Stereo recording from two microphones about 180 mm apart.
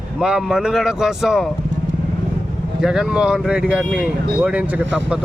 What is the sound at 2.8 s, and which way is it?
Speech, centre (ahead or behind).